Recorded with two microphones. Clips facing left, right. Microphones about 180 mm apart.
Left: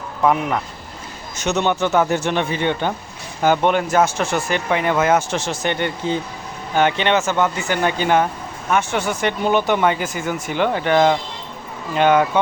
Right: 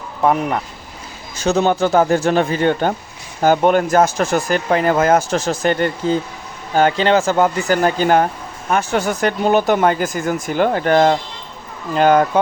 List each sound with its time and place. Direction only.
1.4 s speech: 35° right (ahead or behind)